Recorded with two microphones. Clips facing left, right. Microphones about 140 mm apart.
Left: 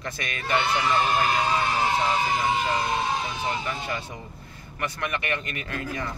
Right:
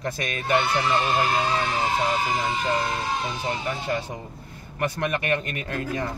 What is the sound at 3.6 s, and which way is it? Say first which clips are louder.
A man's voice: right 4 dB; 45° right (ahead or behind).